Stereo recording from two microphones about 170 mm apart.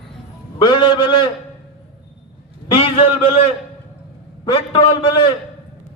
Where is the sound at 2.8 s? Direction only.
35° left (ahead or behind).